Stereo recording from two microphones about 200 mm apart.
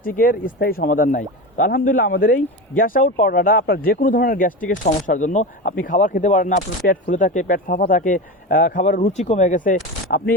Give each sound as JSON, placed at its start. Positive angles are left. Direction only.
{"t": 0.2, "sound": "speech", "side_deg": 45}